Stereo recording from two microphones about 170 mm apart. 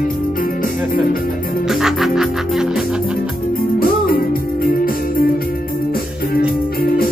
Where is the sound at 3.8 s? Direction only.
60° left (ahead or behind).